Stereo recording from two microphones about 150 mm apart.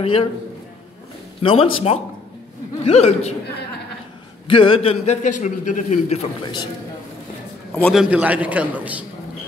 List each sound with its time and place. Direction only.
0.0 s a man's voice: 40° left (ahead or behind)
1.4 s a man's voice: 40° left (ahead or behind)
4.5 s a man's voice: 35° left (ahead or behind)
6.4 s a man's voice: 30° left (ahead or behind)
7.9 s a man's voice: 5° right (ahead or behind)